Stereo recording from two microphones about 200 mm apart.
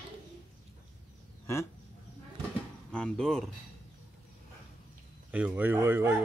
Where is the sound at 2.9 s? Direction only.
5° left (ahead or behind).